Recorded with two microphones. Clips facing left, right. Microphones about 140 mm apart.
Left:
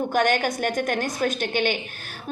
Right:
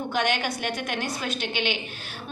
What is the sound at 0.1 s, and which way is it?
A woman's voice, 45° left (ahead or behind).